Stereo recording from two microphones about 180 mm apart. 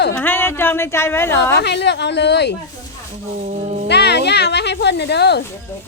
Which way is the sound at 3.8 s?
70° left (ahead or behind).